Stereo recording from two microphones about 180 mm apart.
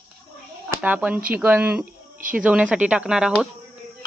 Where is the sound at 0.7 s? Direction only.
10° right (ahead or behind).